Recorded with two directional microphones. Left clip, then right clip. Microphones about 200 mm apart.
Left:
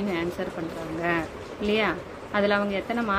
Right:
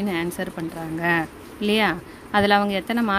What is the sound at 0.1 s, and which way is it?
Speech, 55° right (ahead or behind).